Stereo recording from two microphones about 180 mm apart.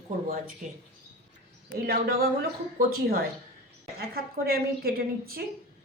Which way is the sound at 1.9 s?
60° right (ahead or behind).